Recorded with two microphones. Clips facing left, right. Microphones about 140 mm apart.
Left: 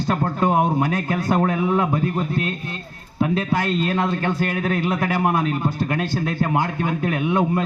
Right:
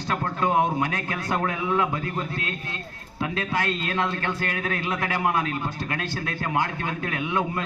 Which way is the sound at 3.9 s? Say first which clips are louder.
Left 5 dB; 15° left (ahead or behind).